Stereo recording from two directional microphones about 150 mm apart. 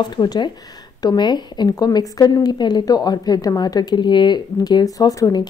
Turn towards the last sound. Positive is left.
turn(degrees=25)  # may be behind; listen again after turning